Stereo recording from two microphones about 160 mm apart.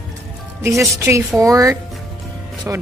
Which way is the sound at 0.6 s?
20° right (ahead or behind).